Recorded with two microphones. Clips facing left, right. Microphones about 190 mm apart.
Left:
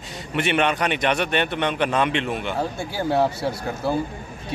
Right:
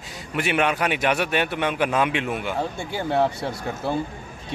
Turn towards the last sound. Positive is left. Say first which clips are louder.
# left 2 dB
turn(degrees=5)  # may be behind; listen again after turning